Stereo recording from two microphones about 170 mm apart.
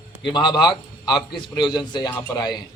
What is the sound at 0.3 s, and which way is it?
A man's voice, 25° left (ahead or behind).